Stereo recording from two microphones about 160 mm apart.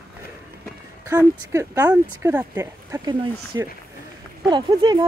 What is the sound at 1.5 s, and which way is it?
Speech, 20° right (ahead or behind).